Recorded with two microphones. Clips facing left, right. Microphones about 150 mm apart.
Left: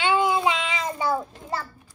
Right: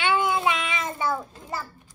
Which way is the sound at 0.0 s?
25° left (ahead or behind).